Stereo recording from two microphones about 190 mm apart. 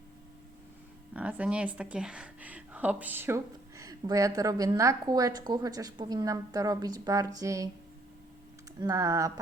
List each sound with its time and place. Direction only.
1.1 s speech: 10° right (ahead or behind)
8.8 s speech: 15° right (ahead or behind)